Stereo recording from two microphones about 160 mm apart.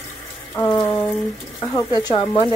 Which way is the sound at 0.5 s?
20° left (ahead or behind).